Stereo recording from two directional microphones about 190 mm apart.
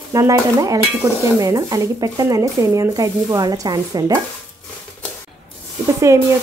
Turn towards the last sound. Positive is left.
turn(degrees=-15)  # may be behind; listen again after turning